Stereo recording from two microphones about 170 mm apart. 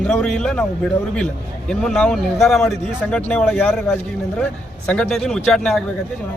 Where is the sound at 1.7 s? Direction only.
5° left (ahead or behind).